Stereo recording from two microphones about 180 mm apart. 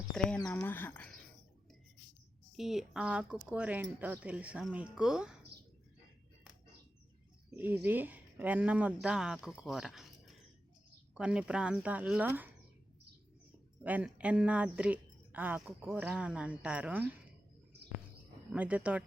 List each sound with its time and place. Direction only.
0.1 s speech: 5° left (ahead or behind)
2.5 s speech: centre (ahead or behind)
7.5 s speech: 10° right (ahead or behind)
13.8 s speech: 5° right (ahead or behind)
18.5 s speech: 10° right (ahead or behind)